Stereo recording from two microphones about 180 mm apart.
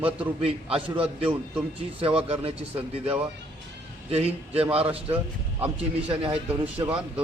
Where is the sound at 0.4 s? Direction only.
30° right (ahead or behind).